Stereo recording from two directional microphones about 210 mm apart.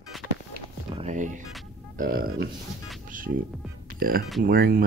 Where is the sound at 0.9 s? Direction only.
30° right (ahead or behind).